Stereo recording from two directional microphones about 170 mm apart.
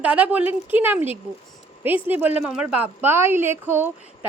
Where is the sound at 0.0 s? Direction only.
10° right (ahead or behind).